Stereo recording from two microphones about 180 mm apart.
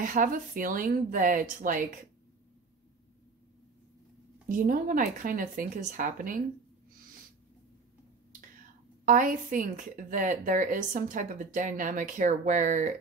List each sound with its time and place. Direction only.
0.0 s a woman's voice: 50° right (ahead or behind)
4.5 s a woman's voice: 50° right (ahead or behind)
9.0 s a woman's voice: 45° right (ahead or behind)